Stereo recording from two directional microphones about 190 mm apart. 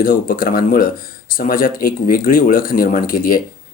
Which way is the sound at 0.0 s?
45° left (ahead or behind).